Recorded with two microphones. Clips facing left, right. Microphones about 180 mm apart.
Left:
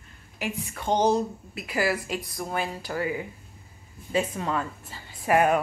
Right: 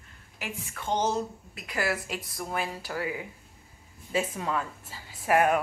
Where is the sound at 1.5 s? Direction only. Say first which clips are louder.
Left 4 dB; 5° left (ahead or behind).